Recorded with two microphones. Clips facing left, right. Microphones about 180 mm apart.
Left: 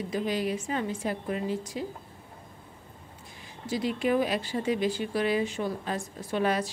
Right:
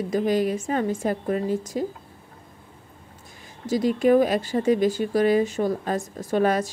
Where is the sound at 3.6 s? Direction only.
45° right (ahead or behind).